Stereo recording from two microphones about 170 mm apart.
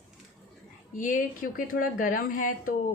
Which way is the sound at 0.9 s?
50° left (ahead or behind).